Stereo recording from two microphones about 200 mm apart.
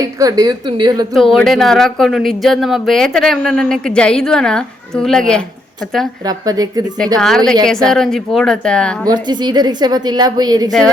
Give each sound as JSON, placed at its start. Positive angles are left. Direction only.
{"t": 0.0, "sound": "a woman's voice", "side_deg": -15}
{"t": 1.1, "sound": "speech", "side_deg": 0}
{"t": 6.2, "sound": "a woman's voice", "side_deg": -20}
{"t": 7.2, "sound": "speech", "side_deg": 0}
{"t": 9.0, "sound": "a woman's voice", "side_deg": -20}